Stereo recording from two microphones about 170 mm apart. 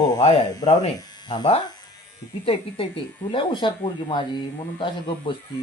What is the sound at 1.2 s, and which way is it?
Speech, 25° left (ahead or behind).